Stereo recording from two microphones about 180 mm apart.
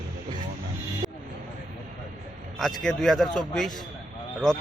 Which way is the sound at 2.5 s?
Centre (ahead or behind).